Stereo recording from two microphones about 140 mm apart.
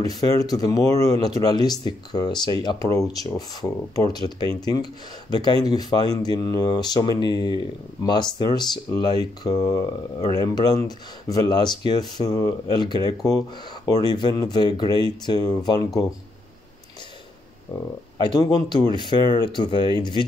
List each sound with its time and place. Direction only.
0.0 s speech: 25° left (ahead or behind)
18.1 s speech: 30° left (ahead or behind)